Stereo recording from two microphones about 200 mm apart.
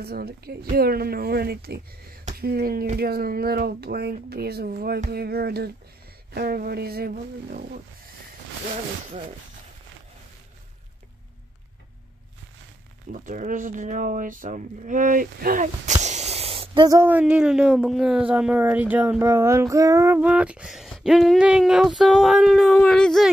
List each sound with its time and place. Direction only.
0.0 s speech: 50° right (ahead or behind)
13.1 s speech: 40° right (ahead or behind); by 23.3 s centre (ahead or behind)